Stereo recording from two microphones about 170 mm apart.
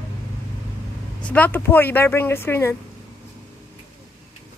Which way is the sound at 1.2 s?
10° left (ahead or behind).